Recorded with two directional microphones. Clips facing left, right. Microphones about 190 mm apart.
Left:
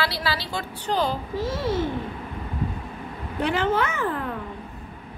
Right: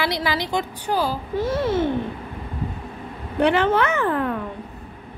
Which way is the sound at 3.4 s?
65° right (ahead or behind).